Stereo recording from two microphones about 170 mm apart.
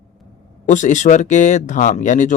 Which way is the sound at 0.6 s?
45° left (ahead or behind).